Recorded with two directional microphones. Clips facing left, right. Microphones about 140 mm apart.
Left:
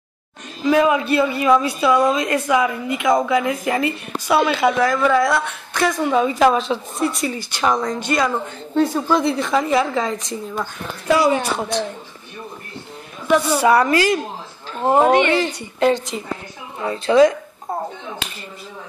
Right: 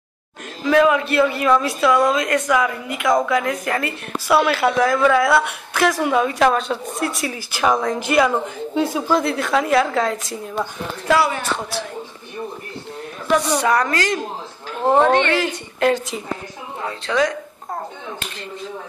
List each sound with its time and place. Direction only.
0.7 s a woman's voice: 10° left (ahead or behind)
11.1 s a man's voice: 20° left (ahead or behind)
13.3 s a woman's voice: 5° left (ahead or behind)
15.4 s a woman's voice: 5° right (ahead or behind)
16.8 s a woman's voice: 15° left (ahead or behind)